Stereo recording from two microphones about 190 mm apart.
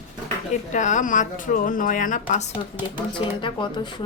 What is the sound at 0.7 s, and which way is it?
Speech, 40° left (ahead or behind).